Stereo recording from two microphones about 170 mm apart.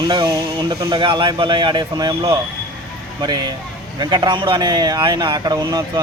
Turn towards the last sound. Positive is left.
turn(degrees=-20)  # may be behind; listen again after turning